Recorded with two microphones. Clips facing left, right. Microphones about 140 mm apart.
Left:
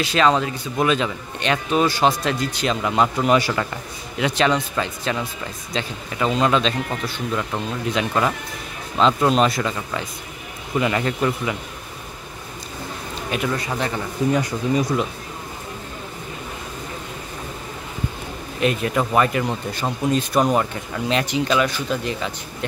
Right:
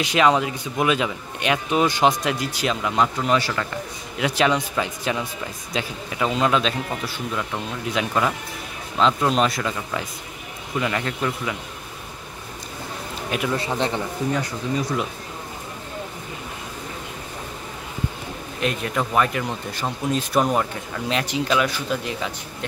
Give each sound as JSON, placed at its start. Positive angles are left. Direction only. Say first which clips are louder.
{"t": 0.0, "sound": "speech", "louder": "even", "side_deg": -15}
{"t": 4.2, "sound": "speech", "louder": "left 1 dB", "side_deg": -10}
{"t": 13.3, "sound": "speech", "louder": "left 1 dB", "side_deg": -5}
{"t": 13.6, "sound": "a man's voice", "louder": "right 1 dB", "side_deg": -25}
{"t": 18.6, "sound": "speech", "louder": "left 4 dB", "side_deg": 0}